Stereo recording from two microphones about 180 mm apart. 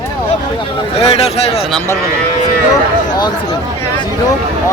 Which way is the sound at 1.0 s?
35° left (ahead or behind).